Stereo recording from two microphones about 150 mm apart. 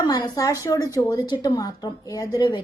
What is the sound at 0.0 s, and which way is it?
Speech, 25° left (ahead or behind).